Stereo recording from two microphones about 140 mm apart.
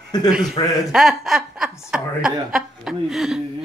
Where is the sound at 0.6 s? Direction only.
30° left (ahead or behind).